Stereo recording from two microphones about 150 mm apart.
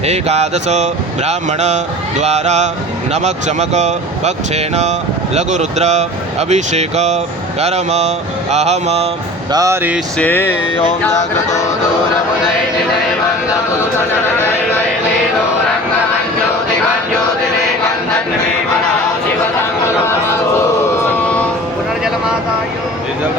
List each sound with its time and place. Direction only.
0.0 s speech: 45° right (ahead or behind)
9.5 s speech: 25° right (ahead or behind)
10.2 s a sound: 10° left (ahead or behind)
21.2 s vehicle: 10° left (ahead or behind)